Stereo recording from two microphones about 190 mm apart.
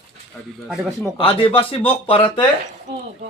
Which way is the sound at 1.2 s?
30° left (ahead or behind).